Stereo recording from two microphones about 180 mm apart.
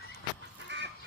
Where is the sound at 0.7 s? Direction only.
75° right (ahead or behind).